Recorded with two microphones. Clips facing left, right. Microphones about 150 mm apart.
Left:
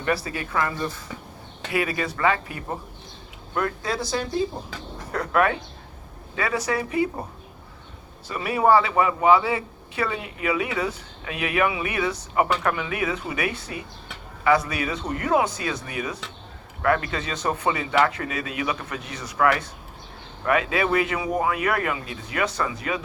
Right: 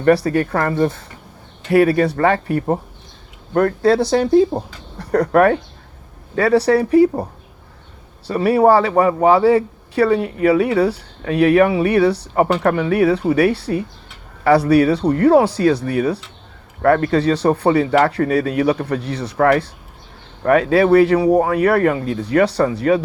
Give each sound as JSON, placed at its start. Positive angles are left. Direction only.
{"t": 0.0, "sound": "speech", "side_deg": -60}
{"t": 1.7, "sound": "speech", "side_deg": -40}
{"t": 5.1, "sound": "a man's voice", "side_deg": -45}
{"t": 8.3, "sound": "a man's voice", "side_deg": -35}